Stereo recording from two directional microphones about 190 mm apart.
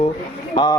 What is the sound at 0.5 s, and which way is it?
Speech, 20° left (ahead or behind).